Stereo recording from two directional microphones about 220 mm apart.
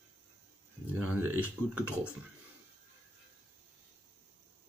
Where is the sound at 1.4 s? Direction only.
5° right (ahead or behind).